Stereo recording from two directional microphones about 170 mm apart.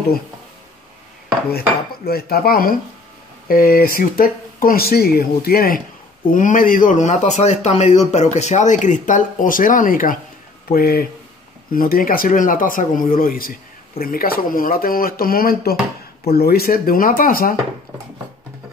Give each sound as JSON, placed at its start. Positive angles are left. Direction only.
{"t": 2.0, "sound": "speech", "side_deg": 65}
{"t": 6.3, "sound": "a man's voice", "side_deg": 50}